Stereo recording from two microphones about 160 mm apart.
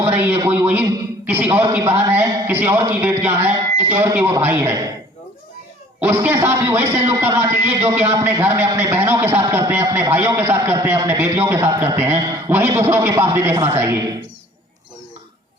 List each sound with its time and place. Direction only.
0.0 s a man's voice: 15° right (ahead or behind)
6.0 s a man's voice: 10° right (ahead or behind)